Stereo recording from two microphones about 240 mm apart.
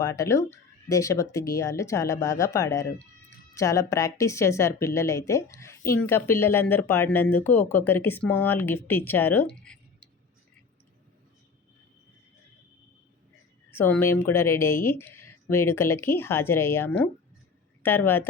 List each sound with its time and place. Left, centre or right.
0.0 s speech: centre
13.7 s speech: centre